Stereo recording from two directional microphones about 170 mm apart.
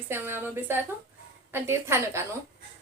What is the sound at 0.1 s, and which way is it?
A woman's voice, 15° right (ahead or behind).